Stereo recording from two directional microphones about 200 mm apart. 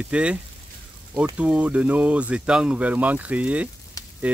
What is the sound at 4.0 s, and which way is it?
Frying, 20° left (ahead or behind).